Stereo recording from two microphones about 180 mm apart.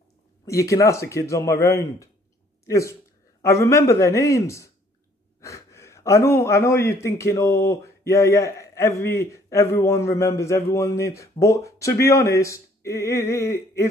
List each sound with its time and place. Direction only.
0.5 s a man's voice: 15° left (ahead or behind)